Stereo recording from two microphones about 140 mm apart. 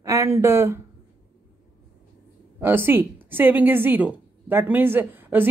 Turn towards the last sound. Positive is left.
turn(degrees=-15)  # may be behind; listen again after turning